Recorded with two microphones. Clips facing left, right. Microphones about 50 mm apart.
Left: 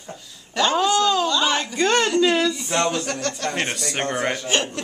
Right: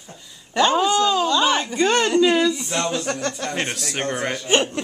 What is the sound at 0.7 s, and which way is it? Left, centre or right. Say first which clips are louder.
Chuckle: even; centre.